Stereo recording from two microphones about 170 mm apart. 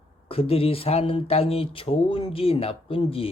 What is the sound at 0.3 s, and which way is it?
Speech, 35° left (ahead or behind).